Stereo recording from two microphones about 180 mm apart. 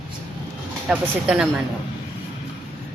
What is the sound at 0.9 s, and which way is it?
Speech, 5° right (ahead or behind).